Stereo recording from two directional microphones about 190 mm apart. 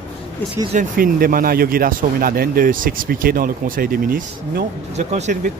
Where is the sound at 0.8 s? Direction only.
50° right (ahead or behind).